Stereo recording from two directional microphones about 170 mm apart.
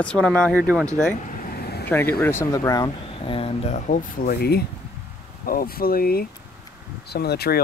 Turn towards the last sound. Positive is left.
turn(degrees=70)  # may be behind; listen again after turning